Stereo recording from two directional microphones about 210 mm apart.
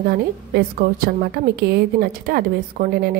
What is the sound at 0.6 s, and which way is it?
A woman's voice, 45° right (ahead or behind).